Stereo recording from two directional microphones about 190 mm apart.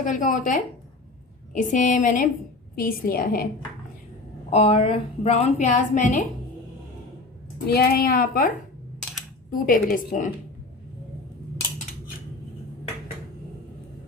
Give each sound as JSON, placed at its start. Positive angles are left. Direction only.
{"t": 0.0, "sound": "a woman's voice", "side_deg": 40}
{"t": 4.5, "sound": "a woman's voice", "side_deg": 30}
{"t": 7.7, "sound": "a woman's voice", "side_deg": 55}
{"t": 9.5, "sound": "a woman's voice", "side_deg": 45}